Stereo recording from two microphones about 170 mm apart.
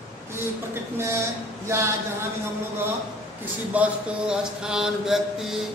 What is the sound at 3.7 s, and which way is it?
Mantra, 5° right (ahead or behind).